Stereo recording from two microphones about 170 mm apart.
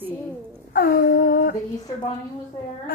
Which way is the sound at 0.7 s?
60° left (ahead or behind).